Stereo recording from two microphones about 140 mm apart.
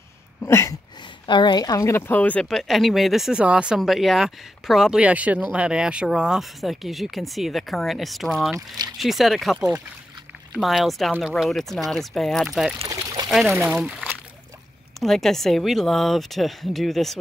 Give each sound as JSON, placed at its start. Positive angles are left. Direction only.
{"t": 0.4, "sound": "a sound", "side_deg": 20}
{"t": 1.2, "sound": "speech", "side_deg": 35}
{"t": 8.5, "sound": "speech", "side_deg": -30}
{"t": 8.9, "sound": "speech", "side_deg": 0}
{"t": 12.8, "sound": "pour", "side_deg": -25}
{"t": 13.3, "sound": "speech", "side_deg": 0}
{"t": 13.6, "sound": "speech", "side_deg": -10}
{"t": 15.0, "sound": "speech", "side_deg": 0}